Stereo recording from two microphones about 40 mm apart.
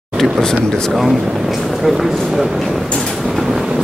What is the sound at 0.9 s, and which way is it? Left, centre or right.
Speech, centre.